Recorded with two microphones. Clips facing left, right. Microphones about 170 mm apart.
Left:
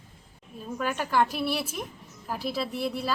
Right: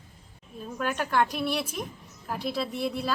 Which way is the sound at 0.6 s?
Centre (ahead or behind).